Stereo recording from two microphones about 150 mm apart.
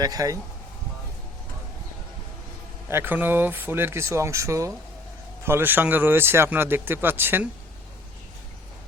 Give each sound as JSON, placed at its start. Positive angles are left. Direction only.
{"t": 0.0, "sound": "speech", "side_deg": -25}
{"t": 2.9, "sound": "a man's voice", "side_deg": -15}